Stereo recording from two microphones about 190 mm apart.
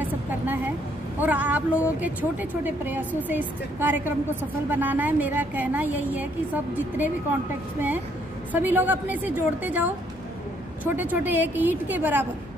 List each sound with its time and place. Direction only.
0.0 s vehicle: 10° right (ahead or behind)
1.2 s a woman's voice: 10° right (ahead or behind)
8.5 s a woman's voice: 10° right (ahead or behind)